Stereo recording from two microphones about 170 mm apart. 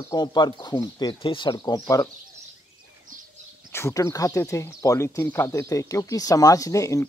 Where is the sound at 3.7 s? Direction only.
20° left (ahead or behind).